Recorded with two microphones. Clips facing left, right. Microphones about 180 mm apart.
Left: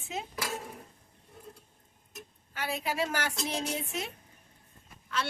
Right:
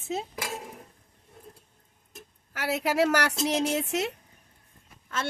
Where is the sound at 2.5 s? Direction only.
80° right.